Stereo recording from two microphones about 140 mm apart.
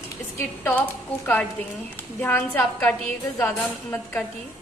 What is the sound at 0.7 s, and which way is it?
A woman's voice, 15° left (ahead or behind).